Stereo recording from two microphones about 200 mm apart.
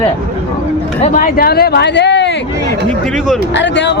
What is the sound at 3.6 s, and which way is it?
Speech, 65° left (ahead or behind).